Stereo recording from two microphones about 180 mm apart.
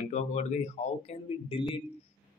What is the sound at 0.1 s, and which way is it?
Speech, 40° left (ahead or behind).